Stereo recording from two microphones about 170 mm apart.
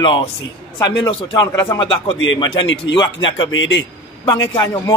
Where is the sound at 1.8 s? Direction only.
30° left (ahead or behind).